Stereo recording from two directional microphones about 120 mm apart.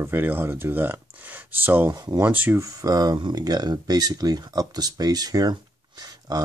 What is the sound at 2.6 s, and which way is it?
Speech, 30° right (ahead or behind).